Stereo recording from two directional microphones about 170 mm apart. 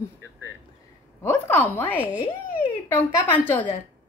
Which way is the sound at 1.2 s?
10° left (ahead or behind).